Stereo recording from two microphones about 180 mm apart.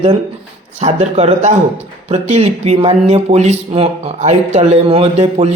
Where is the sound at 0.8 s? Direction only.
40° right (ahead or behind).